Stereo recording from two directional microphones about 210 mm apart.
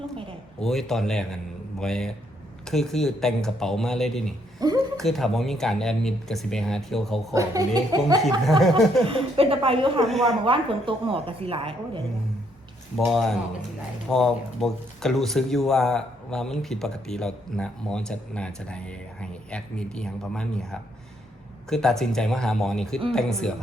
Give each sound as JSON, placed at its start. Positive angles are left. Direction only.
{"t": 0.6, "sound": "speech", "side_deg": 0}
{"t": 4.6, "sound": "a sound", "side_deg": -15}
{"t": 4.9, "sound": "speech", "side_deg": 0}
{"t": 7.3, "sound": "speech", "side_deg": -15}
{"t": 8.4, "sound": "speech", "side_deg": 0}
{"t": 9.0, "sound": "a woman's voice", "side_deg": -25}
{"t": 10.1, "sound": "speech", "side_deg": 0}
{"t": 10.4, "sound": "a woman's voice", "side_deg": -25}
{"t": 13.1, "sound": "speech", "side_deg": 0}